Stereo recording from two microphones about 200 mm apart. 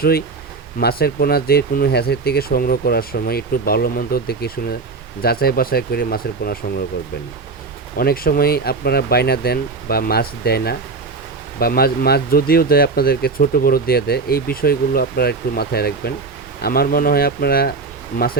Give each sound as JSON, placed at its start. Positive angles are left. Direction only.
{"t": 0.0, "sound": "speech", "side_deg": 50}
{"t": 7.9, "sound": "speech", "side_deg": 45}